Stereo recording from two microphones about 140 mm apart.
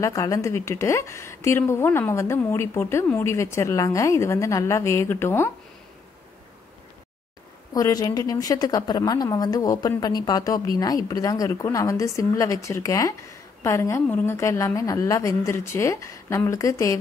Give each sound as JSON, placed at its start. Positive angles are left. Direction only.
{"t": 0.0, "sound": "a woman's voice", "side_deg": 20}
{"t": 7.7, "sound": "a woman's voice", "side_deg": 25}